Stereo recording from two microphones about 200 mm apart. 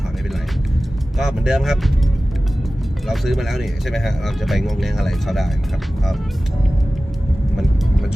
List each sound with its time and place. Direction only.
1.2 s speech: 5° right (ahead or behind)
3.1 s speech: centre (ahead or behind)